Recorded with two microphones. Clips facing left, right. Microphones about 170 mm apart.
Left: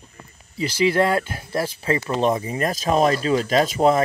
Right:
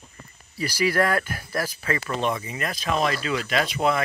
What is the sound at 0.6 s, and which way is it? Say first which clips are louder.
Speech: left 4 dB; 25° left (ahead or behind).